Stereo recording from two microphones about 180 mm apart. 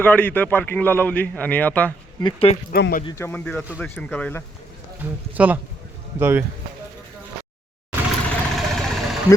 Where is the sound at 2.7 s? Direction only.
55° left (ahead or behind).